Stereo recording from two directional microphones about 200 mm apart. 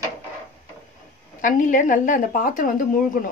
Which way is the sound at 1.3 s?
40° left (ahead or behind).